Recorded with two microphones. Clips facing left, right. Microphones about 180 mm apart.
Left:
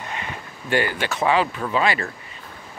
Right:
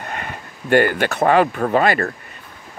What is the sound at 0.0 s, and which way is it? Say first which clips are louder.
Speech: right 2 dB; 50° right (ahead or behind).